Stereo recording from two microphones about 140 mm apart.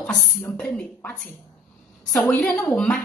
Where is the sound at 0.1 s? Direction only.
20° left (ahead or behind).